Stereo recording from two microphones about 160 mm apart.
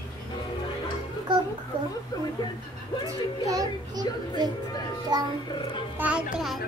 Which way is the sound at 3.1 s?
20° right (ahead or behind).